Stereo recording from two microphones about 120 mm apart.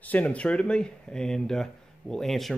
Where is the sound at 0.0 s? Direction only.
10° left (ahead or behind).